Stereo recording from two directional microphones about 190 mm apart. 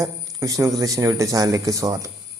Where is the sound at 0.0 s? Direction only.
15° right (ahead or behind).